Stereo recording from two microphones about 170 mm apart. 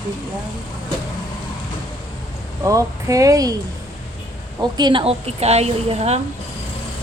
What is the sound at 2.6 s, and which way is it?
Speech, 20° right (ahead or behind).